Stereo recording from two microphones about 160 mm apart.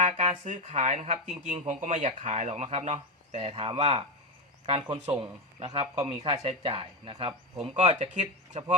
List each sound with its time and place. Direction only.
0.0 s speech: 45° right (ahead or behind)